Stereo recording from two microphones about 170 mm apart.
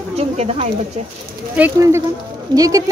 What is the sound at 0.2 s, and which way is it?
Speech, 35° right (ahead or behind).